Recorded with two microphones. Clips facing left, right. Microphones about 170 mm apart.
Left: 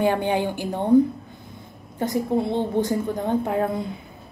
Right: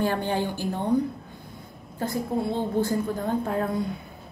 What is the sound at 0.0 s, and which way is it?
Speech, 15° left (ahead or behind).